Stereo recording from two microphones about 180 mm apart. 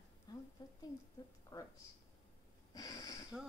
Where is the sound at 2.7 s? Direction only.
20° left (ahead or behind).